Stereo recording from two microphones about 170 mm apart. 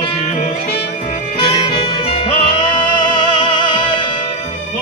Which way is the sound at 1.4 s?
35° left (ahead or behind).